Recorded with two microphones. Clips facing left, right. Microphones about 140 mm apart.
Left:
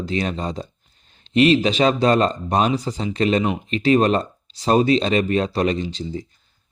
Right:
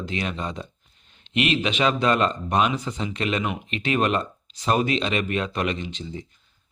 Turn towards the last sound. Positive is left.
turn(degrees=35)  # may be behind; listen again after turning